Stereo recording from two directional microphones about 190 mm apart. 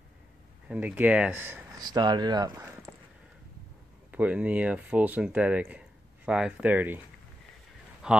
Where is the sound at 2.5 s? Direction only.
10° right (ahead or behind).